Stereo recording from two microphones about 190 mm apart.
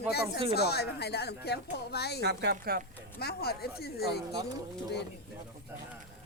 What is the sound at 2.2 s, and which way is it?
Speech, 60° right (ahead or behind).